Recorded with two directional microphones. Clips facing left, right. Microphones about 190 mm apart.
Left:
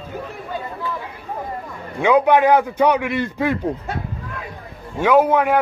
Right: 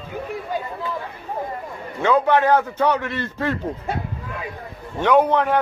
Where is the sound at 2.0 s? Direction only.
15° left (ahead or behind).